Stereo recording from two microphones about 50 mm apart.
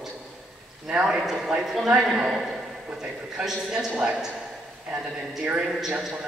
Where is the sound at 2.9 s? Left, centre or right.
Centre.